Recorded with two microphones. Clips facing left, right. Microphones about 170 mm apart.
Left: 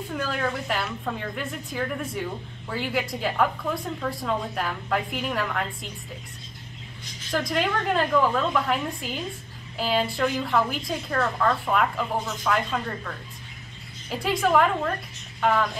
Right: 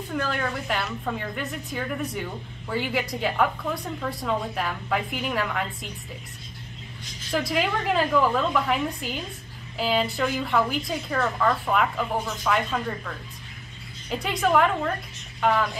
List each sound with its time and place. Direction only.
0.1 s a woman's voice: centre (ahead or behind)
7.3 s a woman's voice: centre (ahead or behind)
14.1 s a woman's voice: centre (ahead or behind)